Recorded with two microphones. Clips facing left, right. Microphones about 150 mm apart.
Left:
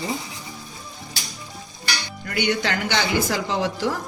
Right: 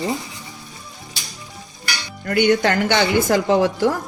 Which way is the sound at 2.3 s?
50° right (ahead or behind).